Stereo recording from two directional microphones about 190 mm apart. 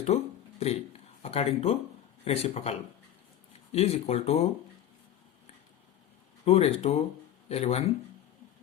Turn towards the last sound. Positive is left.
turn(degrees=30)  # may be behind; listen again after turning